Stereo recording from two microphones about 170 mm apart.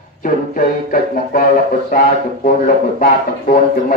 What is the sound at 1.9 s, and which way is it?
Speech, 55° left (ahead or behind).